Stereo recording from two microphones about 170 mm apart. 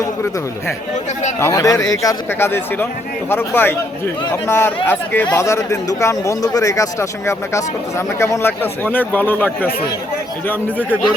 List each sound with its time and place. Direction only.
1.4 s a man's voice: 15° left (ahead or behind)